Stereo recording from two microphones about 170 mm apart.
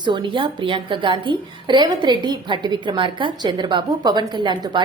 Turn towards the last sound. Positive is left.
turn(degrees=-25)  # may be behind; listen again after turning